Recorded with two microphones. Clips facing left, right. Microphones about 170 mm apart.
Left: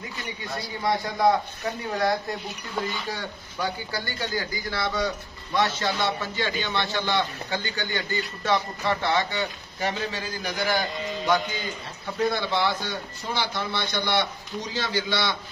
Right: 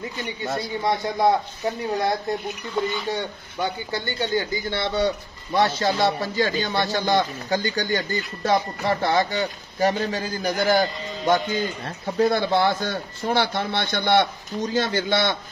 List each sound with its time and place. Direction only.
0.4 s a man's voice: 20° right (ahead or behind); by 15.3 s 50° right (ahead or behind)